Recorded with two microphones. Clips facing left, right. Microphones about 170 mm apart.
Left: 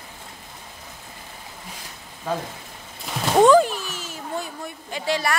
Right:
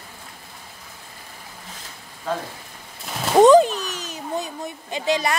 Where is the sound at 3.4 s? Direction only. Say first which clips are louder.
Right 3 dB; 20° right (ahead or behind).